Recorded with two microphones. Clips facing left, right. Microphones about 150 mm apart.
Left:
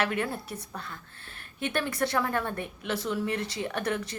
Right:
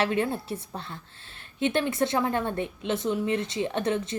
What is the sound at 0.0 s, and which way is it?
A woman's voice, 25° right (ahead or behind).